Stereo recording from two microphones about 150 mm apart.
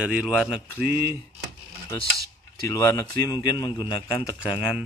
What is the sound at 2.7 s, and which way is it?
Speech, 20° left (ahead or behind).